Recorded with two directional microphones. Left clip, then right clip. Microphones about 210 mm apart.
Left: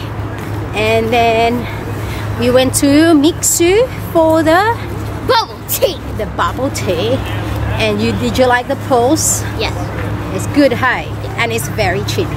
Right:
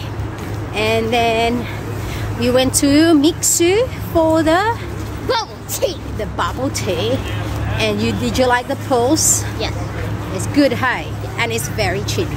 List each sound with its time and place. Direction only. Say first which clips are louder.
0.7 s speech: left 4 dB; 10° right (ahead or behind)
5.3 s speech: left 7 dB; 20° left (ahead or behind)
6.1 s speech: left 4 dB; 10° right (ahead or behind)